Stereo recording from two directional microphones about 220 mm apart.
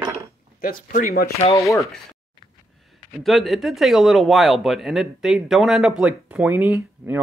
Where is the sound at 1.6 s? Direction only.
15° left (ahead or behind).